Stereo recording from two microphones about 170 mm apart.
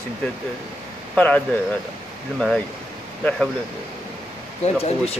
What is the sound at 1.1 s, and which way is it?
Speech, 10° left (ahead or behind).